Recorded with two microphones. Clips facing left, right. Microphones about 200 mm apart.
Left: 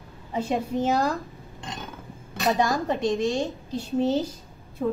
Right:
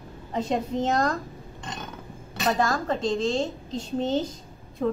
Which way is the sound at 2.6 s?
15° left (ahead or behind).